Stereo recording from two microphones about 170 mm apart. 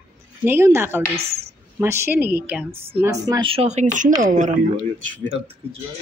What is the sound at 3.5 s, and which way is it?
Speech, 40° right (ahead or behind).